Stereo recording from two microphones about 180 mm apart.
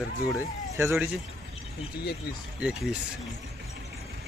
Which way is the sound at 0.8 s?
15° right (ahead or behind).